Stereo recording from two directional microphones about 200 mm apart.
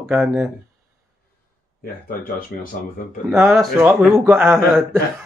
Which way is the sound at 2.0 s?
45° left (ahead or behind).